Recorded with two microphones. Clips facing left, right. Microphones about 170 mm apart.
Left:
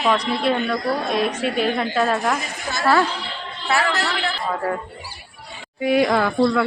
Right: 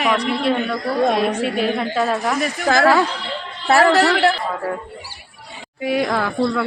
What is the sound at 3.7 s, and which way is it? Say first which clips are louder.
Speech: right 7 dB; 50° right (ahead or behind).